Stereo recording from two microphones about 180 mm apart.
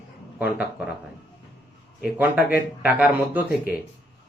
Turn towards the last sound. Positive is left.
turn(degrees=-10)  # may be behind; listen again after turning